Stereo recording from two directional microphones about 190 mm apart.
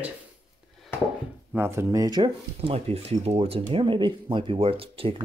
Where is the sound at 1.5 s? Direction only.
10° right (ahead or behind).